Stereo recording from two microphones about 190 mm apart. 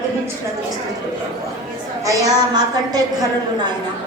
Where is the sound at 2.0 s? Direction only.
20° right (ahead or behind).